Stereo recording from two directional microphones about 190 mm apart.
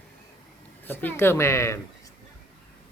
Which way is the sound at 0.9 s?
10° left (ahead or behind).